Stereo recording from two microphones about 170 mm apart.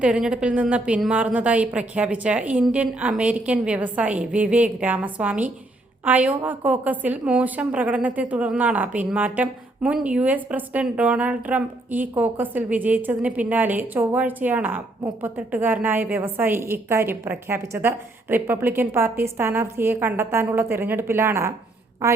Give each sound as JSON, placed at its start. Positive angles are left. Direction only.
{"t": 0.0, "sound": "a woman's voice", "side_deg": -5}